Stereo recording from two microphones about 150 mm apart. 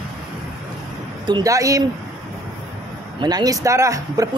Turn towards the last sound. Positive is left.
turn(degrees=-20)  # may be behind; listen again after turning